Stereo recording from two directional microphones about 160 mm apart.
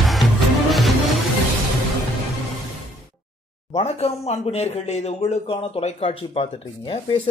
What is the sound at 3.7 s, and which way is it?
Speech, 40° left (ahead or behind).